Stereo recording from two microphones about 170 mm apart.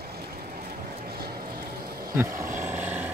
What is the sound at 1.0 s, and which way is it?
Vehicle, 65° right (ahead or behind).